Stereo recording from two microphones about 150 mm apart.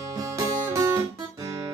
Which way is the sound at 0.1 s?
20° right (ahead or behind).